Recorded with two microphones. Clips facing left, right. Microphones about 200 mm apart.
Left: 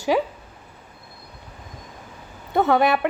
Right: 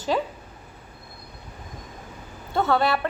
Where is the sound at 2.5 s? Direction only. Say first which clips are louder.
Left 4 dB; 15° left (ahead or behind).